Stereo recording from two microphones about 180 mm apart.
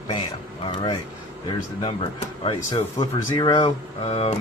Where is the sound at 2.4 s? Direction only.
30° left (ahead or behind).